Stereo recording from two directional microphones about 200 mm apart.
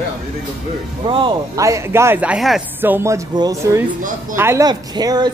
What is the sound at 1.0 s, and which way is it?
Speech, 20° right (ahead or behind).